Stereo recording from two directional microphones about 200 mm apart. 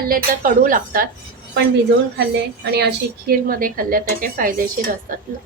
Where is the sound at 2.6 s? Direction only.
55° right (ahead or behind).